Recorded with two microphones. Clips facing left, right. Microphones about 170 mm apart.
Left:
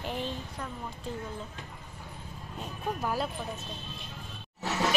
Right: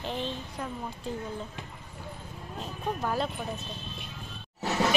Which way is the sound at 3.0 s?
5° left (ahead or behind).